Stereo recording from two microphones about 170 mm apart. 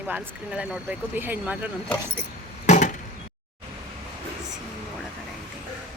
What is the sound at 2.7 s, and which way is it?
Chop, 45° left (ahead or behind).